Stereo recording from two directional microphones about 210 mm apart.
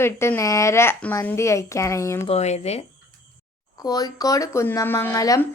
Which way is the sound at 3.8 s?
20° left (ahead or behind).